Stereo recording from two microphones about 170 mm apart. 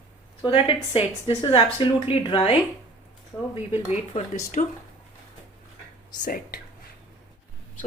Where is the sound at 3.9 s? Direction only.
45° left (ahead or behind).